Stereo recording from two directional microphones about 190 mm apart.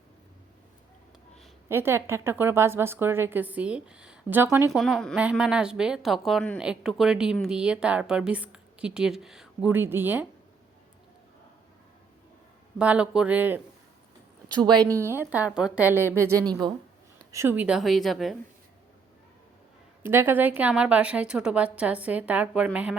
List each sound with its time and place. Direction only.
1.7 s a woman's voice: 10° right (ahead or behind)
12.8 s a woman's voice: 5° right (ahead or behind)
14.4 s a woman's voice: 20° right (ahead or behind); by 18.3 s centre (ahead or behind)
20.0 s a woman's voice: 10° right (ahead or behind)